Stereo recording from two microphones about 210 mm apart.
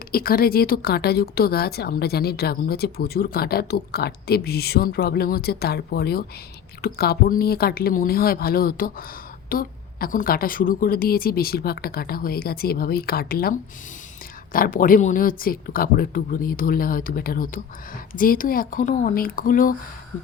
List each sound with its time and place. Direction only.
0.1 s speech: 45° left (ahead or behind)